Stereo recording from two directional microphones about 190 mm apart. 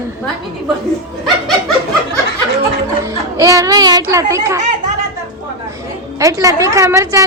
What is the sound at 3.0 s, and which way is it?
Music, 15° right (ahead or behind).